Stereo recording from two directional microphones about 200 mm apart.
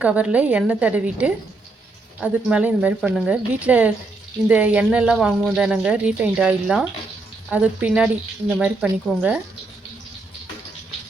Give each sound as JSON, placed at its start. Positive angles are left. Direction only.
{"t": 0.0, "sound": "speech", "side_deg": -5}